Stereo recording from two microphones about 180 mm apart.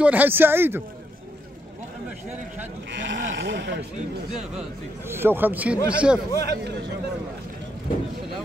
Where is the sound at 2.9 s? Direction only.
85° right.